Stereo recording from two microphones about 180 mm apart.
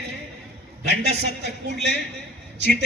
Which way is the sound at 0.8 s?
65° right (ahead or behind).